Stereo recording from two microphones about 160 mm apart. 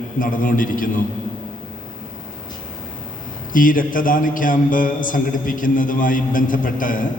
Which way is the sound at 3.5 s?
60° left (ahead or behind).